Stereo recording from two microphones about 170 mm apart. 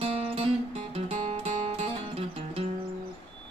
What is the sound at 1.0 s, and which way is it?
Music, 35° right (ahead or behind).